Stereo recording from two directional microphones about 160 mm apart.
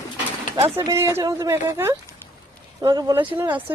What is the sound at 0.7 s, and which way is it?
Speech, 15° right (ahead or behind).